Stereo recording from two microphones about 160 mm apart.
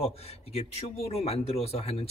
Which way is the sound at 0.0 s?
40° left (ahead or behind).